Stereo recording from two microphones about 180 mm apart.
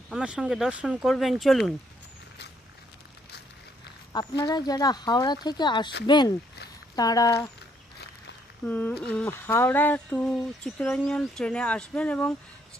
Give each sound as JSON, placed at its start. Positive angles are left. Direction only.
{"t": 0.1, "sound": "speech", "side_deg": -5}
{"t": 4.1, "sound": "speech", "side_deg": 25}
{"t": 8.6, "sound": "a sound", "side_deg": 10}